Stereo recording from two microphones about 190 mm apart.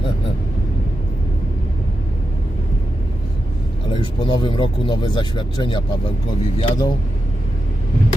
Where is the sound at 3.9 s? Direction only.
25° left (ahead or behind).